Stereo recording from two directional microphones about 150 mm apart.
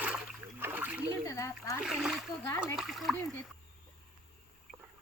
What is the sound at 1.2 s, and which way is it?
Speech, 20° left (ahead or behind).